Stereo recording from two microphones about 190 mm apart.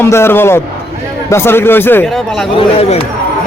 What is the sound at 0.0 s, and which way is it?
Speech, 15° left (ahead or behind).